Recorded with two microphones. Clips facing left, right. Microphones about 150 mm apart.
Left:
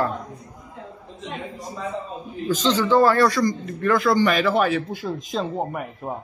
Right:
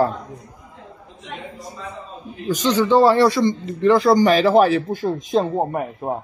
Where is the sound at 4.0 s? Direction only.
35° right (ahead or behind).